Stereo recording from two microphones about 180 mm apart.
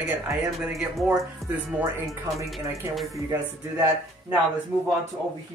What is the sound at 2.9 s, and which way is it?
Speech, centre (ahead or behind).